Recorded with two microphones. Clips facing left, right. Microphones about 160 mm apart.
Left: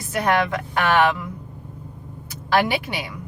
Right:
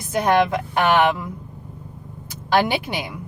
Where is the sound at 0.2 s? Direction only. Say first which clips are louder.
Right 3 dB; 20° right (ahead or behind).